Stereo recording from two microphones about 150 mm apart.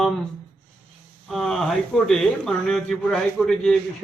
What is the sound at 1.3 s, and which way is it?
Speech, 5° left (ahead or behind).